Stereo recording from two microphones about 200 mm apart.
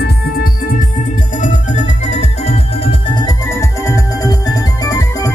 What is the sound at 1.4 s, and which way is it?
Music, 35° left (ahead or behind).